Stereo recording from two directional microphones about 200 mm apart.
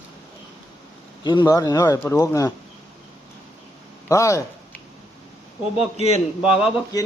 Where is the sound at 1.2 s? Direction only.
20° left (ahead or behind).